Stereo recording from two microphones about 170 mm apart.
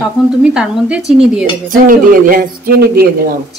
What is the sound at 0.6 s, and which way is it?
Speech, 5° right (ahead or behind).